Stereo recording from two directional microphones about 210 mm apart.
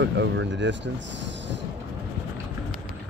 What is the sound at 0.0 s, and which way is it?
Speech, 60° right (ahead or behind).